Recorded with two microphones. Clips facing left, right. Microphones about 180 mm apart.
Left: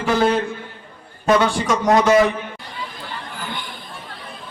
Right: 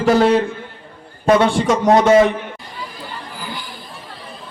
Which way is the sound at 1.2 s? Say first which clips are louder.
Right 3 dB; 30° right (ahead or behind).